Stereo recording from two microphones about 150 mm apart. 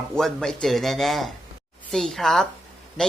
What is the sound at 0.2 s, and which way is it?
Speech, centre (ahead or behind).